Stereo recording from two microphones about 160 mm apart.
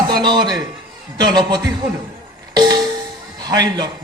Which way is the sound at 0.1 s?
25° right (ahead or behind).